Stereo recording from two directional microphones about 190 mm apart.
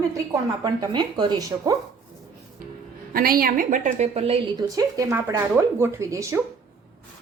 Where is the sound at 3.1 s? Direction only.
50° right (ahead or behind); by 4.4 s 30° right (ahead or behind).